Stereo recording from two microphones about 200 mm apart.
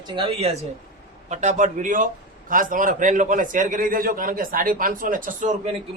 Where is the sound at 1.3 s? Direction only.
35° right (ahead or behind).